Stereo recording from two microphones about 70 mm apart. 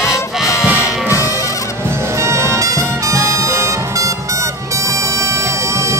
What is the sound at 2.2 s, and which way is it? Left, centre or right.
Music, right.